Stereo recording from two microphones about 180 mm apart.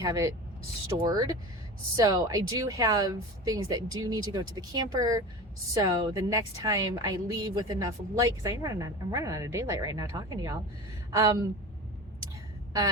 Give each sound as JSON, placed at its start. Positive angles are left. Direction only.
{"t": 0.0, "sound": "a woman's voice", "side_deg": -20}